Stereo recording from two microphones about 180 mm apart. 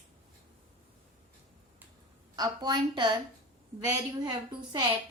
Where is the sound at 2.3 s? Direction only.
20° right (ahead or behind).